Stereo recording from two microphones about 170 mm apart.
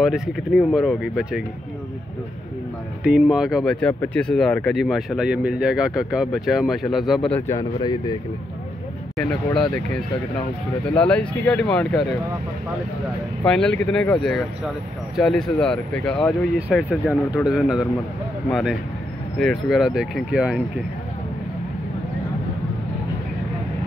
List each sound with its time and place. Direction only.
0.0 s speech: centre (ahead or behind)
3.0 s speech: 5° right (ahead or behind)
7.5 s speech: 25° left (ahead or behind)
9.1 s speech: 5° left (ahead or behind)
13.4 s speech: 5° left (ahead or behind)